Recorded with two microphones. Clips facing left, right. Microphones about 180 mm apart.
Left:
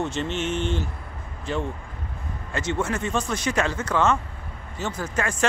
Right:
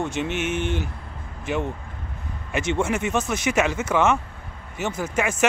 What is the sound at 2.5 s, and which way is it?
Speech, 20° right (ahead or behind).